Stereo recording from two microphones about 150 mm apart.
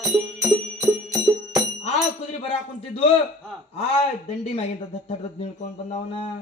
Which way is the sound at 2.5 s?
40° left (ahead or behind).